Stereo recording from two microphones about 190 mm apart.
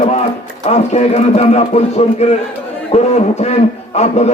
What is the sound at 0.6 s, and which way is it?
A man's voice, 35° left (ahead or behind).